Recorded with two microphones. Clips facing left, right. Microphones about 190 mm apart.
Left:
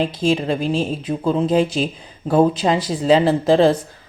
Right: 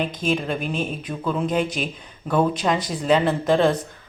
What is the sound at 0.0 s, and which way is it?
Speech, 30° left (ahead or behind).